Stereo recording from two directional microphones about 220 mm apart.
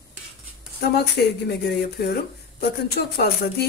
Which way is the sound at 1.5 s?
45° left (ahead or behind).